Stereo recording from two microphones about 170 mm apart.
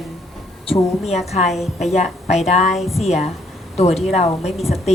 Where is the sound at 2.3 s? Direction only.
40° left (ahead or behind).